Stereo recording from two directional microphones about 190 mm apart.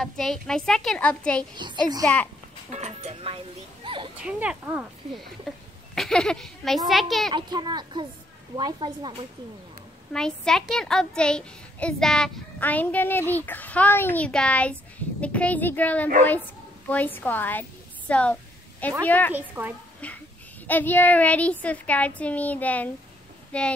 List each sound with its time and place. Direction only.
0.0 s a child's voice: centre (ahead or behind)
1.6 s speech: 25° right (ahead or behind)
2.7 s speech: 35° right (ahead or behind)
4.2 s a child's voice: 5° right (ahead or behind)
7.5 s speech: 20° right (ahead or behind)
10.1 s a child's voice: 5° left (ahead or behind)
19.3 s speech: 10° right (ahead or behind)
20.6 s a child's voice: 10° left (ahead or behind)